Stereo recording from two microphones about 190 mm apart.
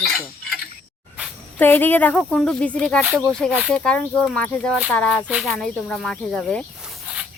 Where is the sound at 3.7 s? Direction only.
5° left (ahead or behind).